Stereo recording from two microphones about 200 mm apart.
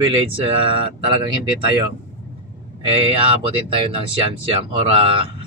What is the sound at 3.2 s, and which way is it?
Speech, 25° right (ahead or behind).